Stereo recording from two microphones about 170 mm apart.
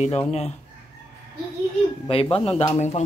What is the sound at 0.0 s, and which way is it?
Speech, 40° left (ahead or behind).